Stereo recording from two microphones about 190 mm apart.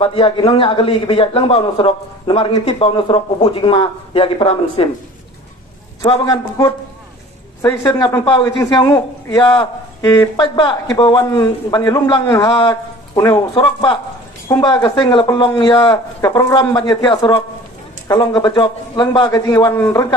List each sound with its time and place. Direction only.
0.0 s a man's voice: 30° left (ahead or behind)
6.2 s a man's voice: 20° left (ahead or behind)